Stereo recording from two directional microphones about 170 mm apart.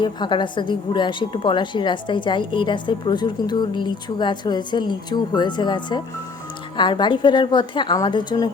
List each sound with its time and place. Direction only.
0.0 s a woman's voice: 25° left (ahead or behind)